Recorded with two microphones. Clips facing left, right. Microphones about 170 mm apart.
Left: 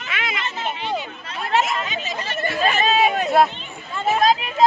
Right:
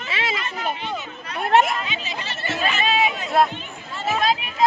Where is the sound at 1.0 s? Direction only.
60° right (ahead or behind).